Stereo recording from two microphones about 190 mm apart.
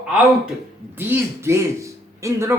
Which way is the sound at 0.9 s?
15° right (ahead or behind).